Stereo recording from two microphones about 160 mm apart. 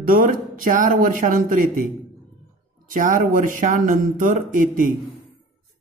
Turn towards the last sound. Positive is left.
turn(degrees=-55)  # may be behind; listen again after turning